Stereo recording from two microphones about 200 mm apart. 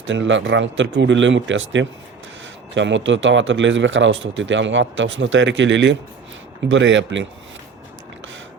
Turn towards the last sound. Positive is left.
turn(degrees=-65)  # may be behind; listen again after turning